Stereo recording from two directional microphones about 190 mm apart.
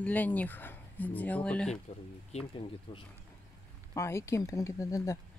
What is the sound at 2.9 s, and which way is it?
Speech, 30° left (ahead or behind).